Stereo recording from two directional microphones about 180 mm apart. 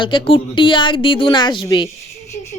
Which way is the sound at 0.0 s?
30° left (ahead or behind).